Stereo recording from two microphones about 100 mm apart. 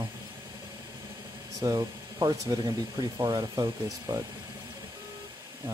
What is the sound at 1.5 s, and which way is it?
Speech, 35° right (ahead or behind).